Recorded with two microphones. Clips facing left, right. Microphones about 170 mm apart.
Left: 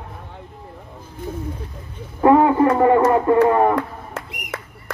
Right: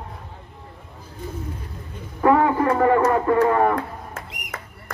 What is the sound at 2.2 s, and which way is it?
Speech, 25° left (ahead or behind).